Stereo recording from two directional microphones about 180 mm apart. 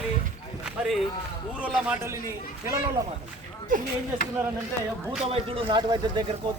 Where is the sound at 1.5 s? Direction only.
5° right (ahead or behind).